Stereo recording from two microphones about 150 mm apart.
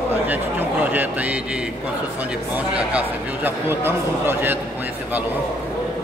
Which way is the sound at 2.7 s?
10° right (ahead or behind).